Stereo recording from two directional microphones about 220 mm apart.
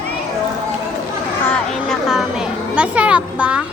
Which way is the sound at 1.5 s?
Centre (ahead or behind).